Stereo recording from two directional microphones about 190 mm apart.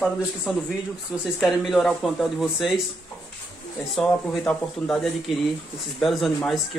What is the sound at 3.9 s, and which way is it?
Speech, 5° left (ahead or behind).